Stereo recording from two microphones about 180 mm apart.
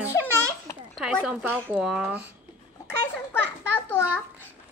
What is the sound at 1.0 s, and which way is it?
Speech, 5° right (ahead or behind).